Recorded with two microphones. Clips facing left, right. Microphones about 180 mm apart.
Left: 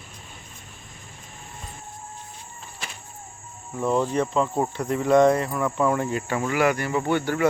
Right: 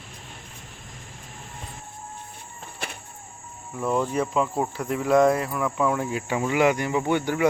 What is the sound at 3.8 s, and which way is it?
Cricket, 5° right (ahead or behind).